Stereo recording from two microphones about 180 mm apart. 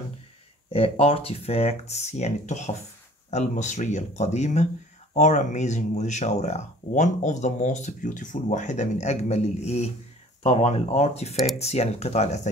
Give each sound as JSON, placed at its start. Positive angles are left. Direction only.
{"t": 0.7, "sound": "speech", "side_deg": 35}